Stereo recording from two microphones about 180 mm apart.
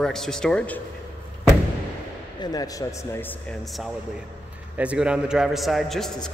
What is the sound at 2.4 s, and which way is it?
A man's voice, 20° left (ahead or behind).